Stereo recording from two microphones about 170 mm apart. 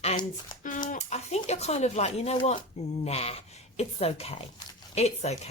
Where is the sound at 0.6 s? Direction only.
50° left (ahead or behind).